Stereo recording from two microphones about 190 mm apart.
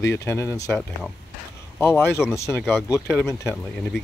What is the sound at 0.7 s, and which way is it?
Speech, centre (ahead or behind).